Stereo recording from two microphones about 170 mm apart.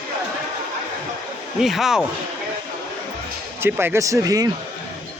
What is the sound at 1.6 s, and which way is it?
Speech, centre (ahead or behind).